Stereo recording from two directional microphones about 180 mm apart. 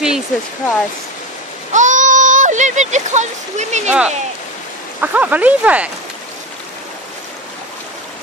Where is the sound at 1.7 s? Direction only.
45° right (ahead or behind).